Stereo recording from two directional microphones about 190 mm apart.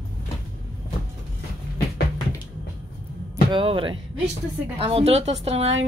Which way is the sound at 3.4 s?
25° right (ahead or behind).